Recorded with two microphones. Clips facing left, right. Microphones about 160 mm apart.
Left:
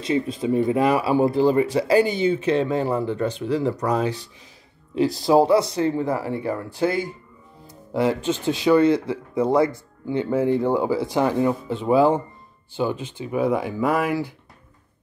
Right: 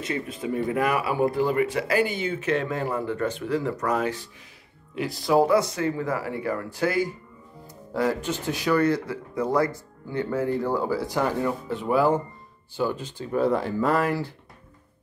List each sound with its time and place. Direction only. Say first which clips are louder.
0.4 s speech: left 4 dB; 20° left (ahead or behind)
2.2 s speech: left 6 dB; 20° left (ahead or behind)